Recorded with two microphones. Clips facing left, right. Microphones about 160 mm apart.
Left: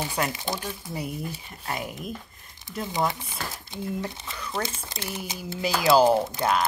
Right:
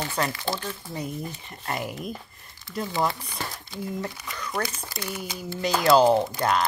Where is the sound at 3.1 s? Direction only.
25° left (ahead or behind).